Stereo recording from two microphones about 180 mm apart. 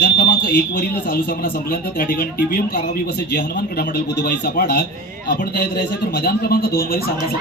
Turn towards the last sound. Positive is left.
turn(degrees=55)  # may be behind; listen again after turning